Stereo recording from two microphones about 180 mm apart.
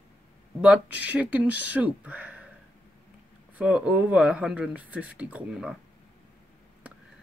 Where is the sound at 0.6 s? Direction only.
5° right (ahead or behind).